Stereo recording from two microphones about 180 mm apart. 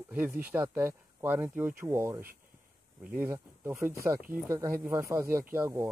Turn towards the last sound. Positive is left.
turn(degrees=-15)  # may be behind; listen again after turning